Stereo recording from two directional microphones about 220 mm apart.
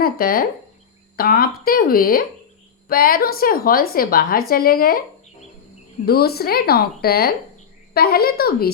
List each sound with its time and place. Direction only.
0.0 s a woman's voice: 40° left (ahead or behind)
6.1 s speech: 45° left (ahead or behind)